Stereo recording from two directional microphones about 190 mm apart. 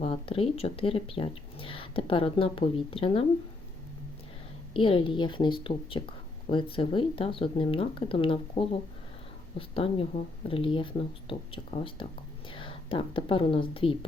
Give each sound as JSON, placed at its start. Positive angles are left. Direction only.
{"t": 0.0, "sound": "speech", "side_deg": 30}
{"t": 4.7, "sound": "a woman's voice", "side_deg": 30}